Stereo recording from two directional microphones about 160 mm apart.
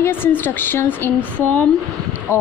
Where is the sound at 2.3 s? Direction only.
15° left (ahead or behind).